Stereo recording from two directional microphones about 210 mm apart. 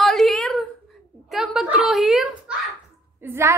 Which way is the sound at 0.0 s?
Centre (ahead or behind).